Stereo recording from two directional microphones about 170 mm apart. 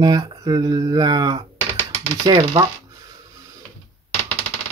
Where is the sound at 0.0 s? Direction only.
25° right (ahead or behind).